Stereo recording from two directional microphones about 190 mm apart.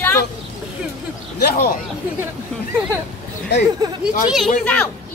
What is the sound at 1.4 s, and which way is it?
Speech, 55° left (ahead or behind).